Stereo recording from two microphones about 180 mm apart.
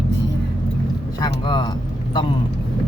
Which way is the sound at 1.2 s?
25° left (ahead or behind).